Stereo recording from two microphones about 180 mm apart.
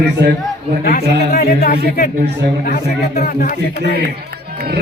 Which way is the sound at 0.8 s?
55° left (ahead or behind).